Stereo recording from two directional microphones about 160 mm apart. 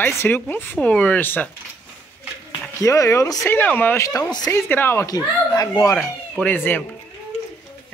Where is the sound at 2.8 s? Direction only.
20° left (ahead or behind).